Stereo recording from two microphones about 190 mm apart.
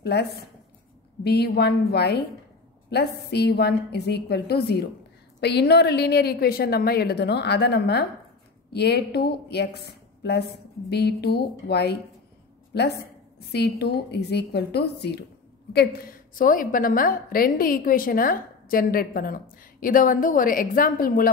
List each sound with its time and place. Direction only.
0.0 s a woman's voice: 60° left (ahead or behind)
13.5 s a woman's voice: 60° left (ahead or behind)